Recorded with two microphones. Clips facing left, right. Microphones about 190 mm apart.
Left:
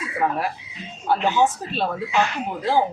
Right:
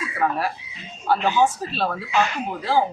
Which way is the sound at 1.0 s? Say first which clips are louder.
Even; 20° left (ahead or behind).